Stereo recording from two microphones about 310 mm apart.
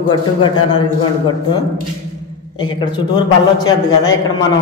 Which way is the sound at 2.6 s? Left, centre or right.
Centre.